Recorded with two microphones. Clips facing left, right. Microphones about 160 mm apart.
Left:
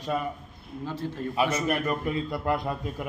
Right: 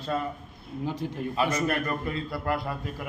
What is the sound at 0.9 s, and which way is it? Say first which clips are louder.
Speech: right 1 dB; 15° right (ahead or behind).